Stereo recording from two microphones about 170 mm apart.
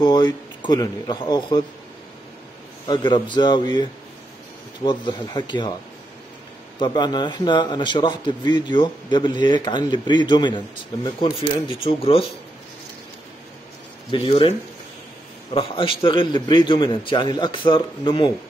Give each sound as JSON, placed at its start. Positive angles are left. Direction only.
{"t": 0.0, "sound": "a man's voice", "side_deg": 25}
{"t": 2.9, "sound": "a man's voice", "side_deg": 25}
{"t": 4.8, "sound": "a man's voice", "side_deg": 25}
{"t": 6.8, "sound": "a man's voice", "side_deg": 25}
{"t": 14.1, "sound": "speech", "side_deg": 30}
{"t": 15.5, "sound": "a man's voice", "side_deg": 30}